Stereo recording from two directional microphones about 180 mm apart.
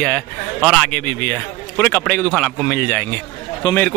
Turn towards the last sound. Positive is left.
turn(degrees=25)  # may be behind; listen again after turning